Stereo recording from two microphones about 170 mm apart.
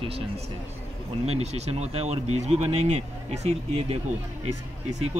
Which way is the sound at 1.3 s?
40° right (ahead or behind).